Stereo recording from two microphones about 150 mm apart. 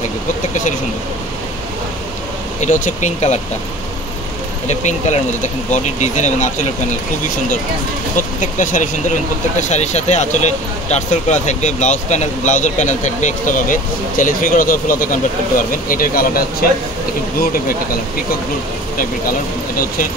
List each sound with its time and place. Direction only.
2.6 s speech: 55° left (ahead or behind)
4.6 s speech: 50° left (ahead or behind)
8.2 s speech: 60° left (ahead or behind); by 16.4 s 75° left (ahead or behind)